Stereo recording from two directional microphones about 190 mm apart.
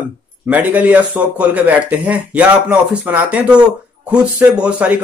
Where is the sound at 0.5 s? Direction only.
10° right (ahead or behind).